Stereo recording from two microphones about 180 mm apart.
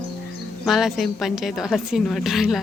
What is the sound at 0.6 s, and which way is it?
A woman's voice, centre (ahead or behind).